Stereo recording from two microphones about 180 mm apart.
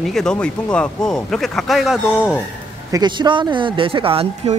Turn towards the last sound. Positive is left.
turn(degrees=-30)  # may be behind; listen again after turning